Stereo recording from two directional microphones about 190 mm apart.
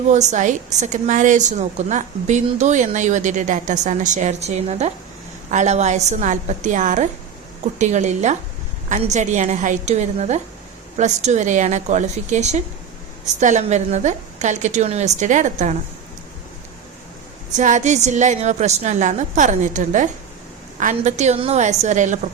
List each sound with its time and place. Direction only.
0.1 s a woman's voice: 40° right (ahead or behind)
17.5 s a woman's voice: 40° right (ahead or behind)